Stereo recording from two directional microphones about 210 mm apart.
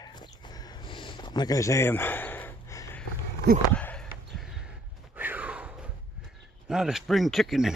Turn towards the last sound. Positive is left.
turn(degrees=0)  # may be behind; listen again after turning